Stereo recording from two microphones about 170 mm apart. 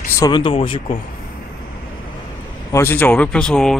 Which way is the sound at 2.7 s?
15° left (ahead or behind).